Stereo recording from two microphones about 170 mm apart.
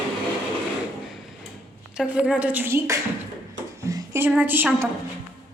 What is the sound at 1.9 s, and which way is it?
A woman's voice, 5° right (ahead or behind).